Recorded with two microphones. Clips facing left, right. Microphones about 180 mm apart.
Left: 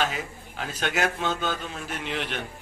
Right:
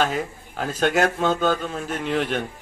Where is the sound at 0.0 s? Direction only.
45° right (ahead or behind).